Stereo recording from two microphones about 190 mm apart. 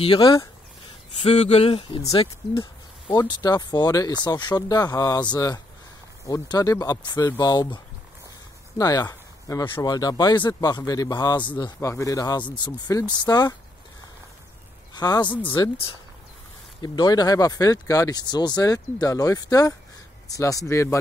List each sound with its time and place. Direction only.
0.0 s speech: 25° left (ahead or behind)
15.0 s speech: 20° left (ahead or behind)